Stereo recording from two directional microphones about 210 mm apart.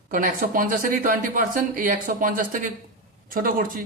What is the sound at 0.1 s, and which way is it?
Speech, 40° right (ahead or behind).